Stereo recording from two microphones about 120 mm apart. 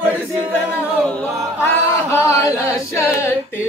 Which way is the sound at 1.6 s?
20° left (ahead or behind).